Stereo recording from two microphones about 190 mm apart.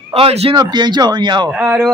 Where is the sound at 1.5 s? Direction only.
5° right (ahead or behind).